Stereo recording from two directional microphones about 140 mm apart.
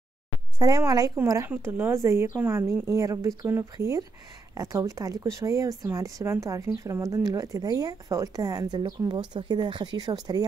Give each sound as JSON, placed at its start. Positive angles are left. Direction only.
{"t": 0.6, "sound": "speech", "side_deg": -25}